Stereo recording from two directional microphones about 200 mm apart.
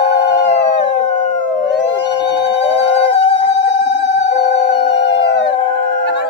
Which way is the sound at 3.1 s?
60° left (ahead or behind).